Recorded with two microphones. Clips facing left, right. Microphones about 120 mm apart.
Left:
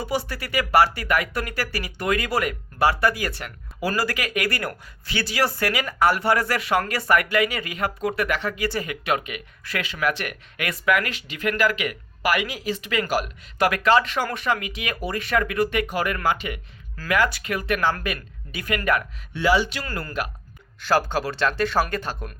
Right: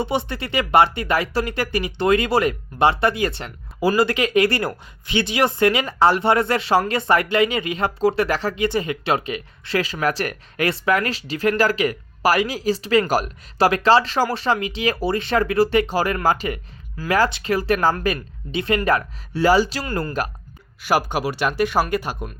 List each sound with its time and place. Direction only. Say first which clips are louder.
0.0 s speech: right 4 dB; 25° right (ahead or behind)
8.6 s speech: right 5 dB; 20° right (ahead or behind); by 20.3 s 40° right (ahead or behind)
20.8 s speech: right 1 dB; 15° right (ahead or behind)